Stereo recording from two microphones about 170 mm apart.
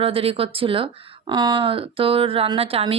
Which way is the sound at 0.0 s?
35° right (ahead or behind).